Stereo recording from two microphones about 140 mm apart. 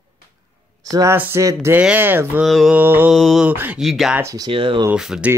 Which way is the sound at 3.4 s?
10° right (ahead or behind).